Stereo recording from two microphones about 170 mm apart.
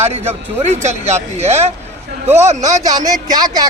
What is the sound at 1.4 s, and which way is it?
Speech, 40° right (ahead or behind).